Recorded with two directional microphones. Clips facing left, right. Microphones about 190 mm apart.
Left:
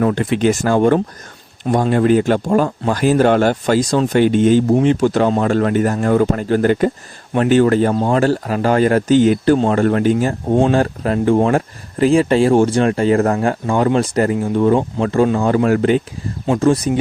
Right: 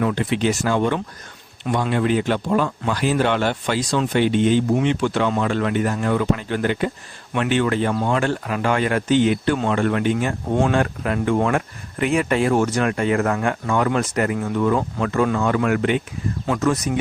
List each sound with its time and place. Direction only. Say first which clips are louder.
0.0 s a man's voice: left 5 dB; 45° left (ahead or behind)